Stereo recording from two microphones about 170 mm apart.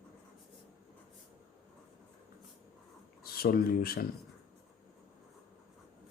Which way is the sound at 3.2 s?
60° left (ahead or behind).